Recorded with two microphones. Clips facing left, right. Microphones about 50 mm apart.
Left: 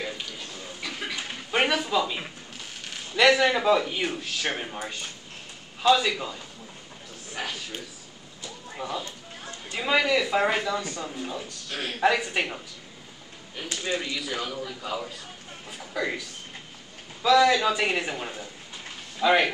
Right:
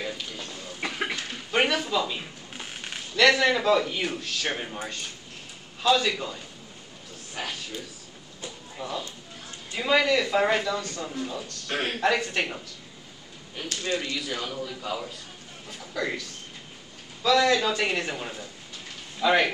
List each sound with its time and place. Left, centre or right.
0.7 s a sound: right
1.1 s a sound: centre
3.2 s speech: centre
5.8 s speech: centre
7.3 s a sound: centre
8.8 s speech: centre
11.7 s speech: right
12.0 s speech: centre
13.7 s speech: centre